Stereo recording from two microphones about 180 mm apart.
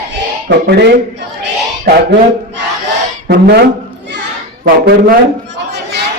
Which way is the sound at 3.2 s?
60° right (ahead or behind).